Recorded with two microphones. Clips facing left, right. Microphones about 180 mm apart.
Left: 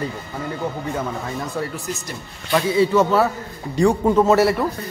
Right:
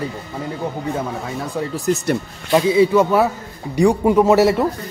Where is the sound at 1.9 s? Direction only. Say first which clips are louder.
Right 12 dB; 65° right (ahead or behind).